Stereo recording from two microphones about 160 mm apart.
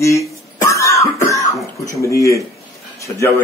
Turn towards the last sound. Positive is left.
turn(degrees=20)  # may be behind; listen again after turning